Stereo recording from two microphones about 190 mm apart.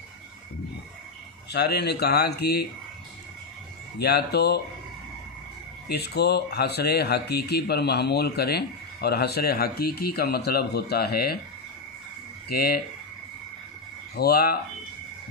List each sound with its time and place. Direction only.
1.5 s speech: 60° left (ahead or behind)
4.0 s speech: 60° left (ahead or behind)
5.9 s speech: 60° left (ahead or behind)
12.5 s speech: 55° left (ahead or behind)
14.1 s speech: 55° left (ahead or behind)